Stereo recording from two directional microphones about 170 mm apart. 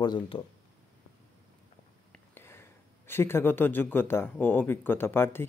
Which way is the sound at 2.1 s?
15° left (ahead or behind).